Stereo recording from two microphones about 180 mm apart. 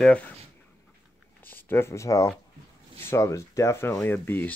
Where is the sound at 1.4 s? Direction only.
10° left (ahead or behind).